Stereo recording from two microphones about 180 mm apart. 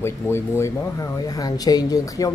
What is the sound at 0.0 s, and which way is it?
Speech, 15° left (ahead or behind).